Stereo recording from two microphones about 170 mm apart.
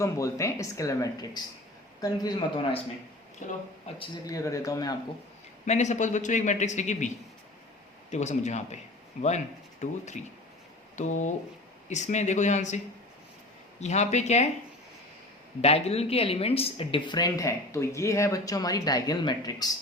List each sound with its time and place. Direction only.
0.0 s a woman's voice: 15° left (ahead or behind)
3.4 s a woman's voice: 35° left (ahead or behind)
5.6 s a man's voice: 45° left (ahead or behind)
8.1 s a man's voice: 40° left (ahead or behind)
9.8 s a man's voice: 45° left (ahead or behind)
15.6 s a woman's voice: 35° left (ahead or behind); by 19.7 s 20° left (ahead or behind)